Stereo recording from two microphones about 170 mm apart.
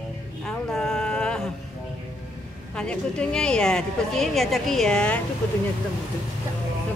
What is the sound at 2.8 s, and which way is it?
Speech, 5° left (ahead or behind).